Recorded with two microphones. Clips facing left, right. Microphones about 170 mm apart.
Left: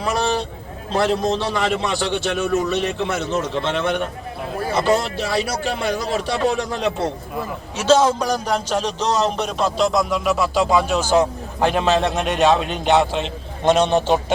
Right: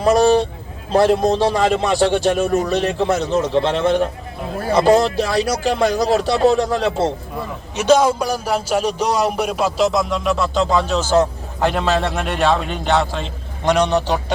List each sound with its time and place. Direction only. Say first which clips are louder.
0.9 s a man's voice: right 5 dB; 40° right (ahead or behind)
7.8 s speech: right 2 dB; 15° right (ahead or behind); by 14.3 s 20° left (ahead or behind)